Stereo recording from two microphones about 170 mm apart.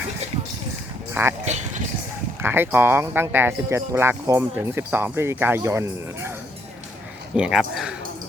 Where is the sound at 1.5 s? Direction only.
40° right (ahead or behind).